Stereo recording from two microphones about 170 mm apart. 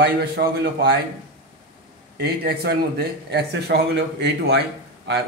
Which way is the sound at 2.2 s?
65° right (ahead or behind).